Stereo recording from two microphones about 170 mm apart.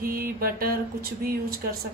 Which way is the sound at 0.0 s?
55° right (ahead or behind).